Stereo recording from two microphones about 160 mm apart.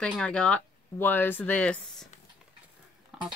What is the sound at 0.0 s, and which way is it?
Speech, 5° left (ahead or behind).